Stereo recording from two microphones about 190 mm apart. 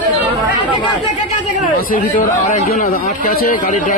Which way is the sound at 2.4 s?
40° left (ahead or behind).